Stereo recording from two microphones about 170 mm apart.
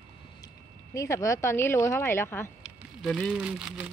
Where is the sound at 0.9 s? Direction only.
20° left (ahead or behind).